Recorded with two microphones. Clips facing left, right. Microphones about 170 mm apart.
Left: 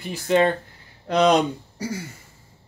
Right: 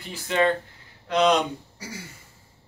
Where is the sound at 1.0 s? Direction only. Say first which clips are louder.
Left 2 dB; 40° left (ahead or behind).